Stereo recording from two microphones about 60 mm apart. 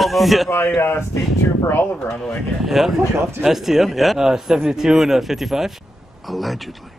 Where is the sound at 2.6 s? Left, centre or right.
Centre.